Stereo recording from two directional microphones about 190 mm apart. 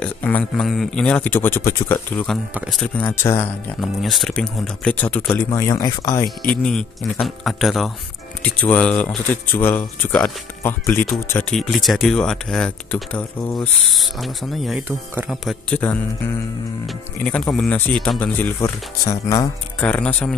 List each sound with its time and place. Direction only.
0.0 s speech: 10° left (ahead or behind)
2.5 s speech: 5° right (ahead or behind)
3.1 s speech: 15° left (ahead or behind)
3.8 s speech: centre (ahead or behind)
5.5 s speech: 20° left (ahead or behind)
6.5 s speech: 5° left (ahead or behind)
19.8 s speech: 5° left (ahead or behind)